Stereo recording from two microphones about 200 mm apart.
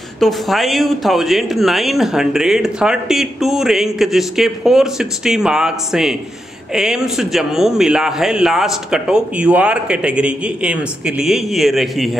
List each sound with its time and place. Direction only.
0.2 s speech: centre (ahead or behind)